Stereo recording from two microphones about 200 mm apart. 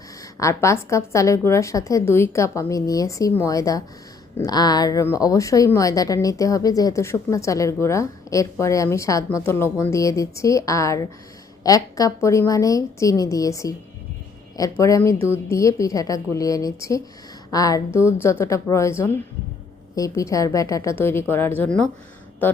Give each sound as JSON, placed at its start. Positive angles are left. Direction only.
{"t": 0.3, "sound": "a woman's voice", "side_deg": 15}